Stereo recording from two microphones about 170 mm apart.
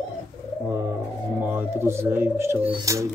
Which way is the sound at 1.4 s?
10° right (ahead or behind).